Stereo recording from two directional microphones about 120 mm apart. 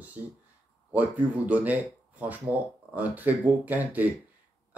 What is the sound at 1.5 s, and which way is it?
Speech, 15° right (ahead or behind).